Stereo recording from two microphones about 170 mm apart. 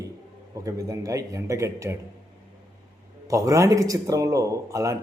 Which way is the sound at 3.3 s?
20° right (ahead or behind).